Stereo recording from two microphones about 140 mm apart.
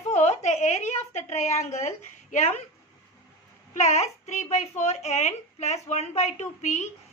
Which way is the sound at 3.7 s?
50° left (ahead or behind).